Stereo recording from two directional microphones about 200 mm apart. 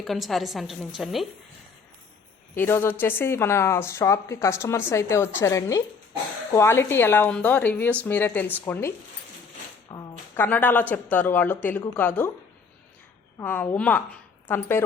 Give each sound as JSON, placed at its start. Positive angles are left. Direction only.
{"t": 0.0, "sound": "a woman's voice", "side_deg": 0}
{"t": 2.6, "sound": "a woman's voice", "side_deg": 10}
{"t": 9.9, "sound": "a sound", "side_deg": 20}
{"t": 10.4, "sound": "a woman's voice", "side_deg": 10}
{"t": 13.4, "sound": "a woman's voice", "side_deg": 10}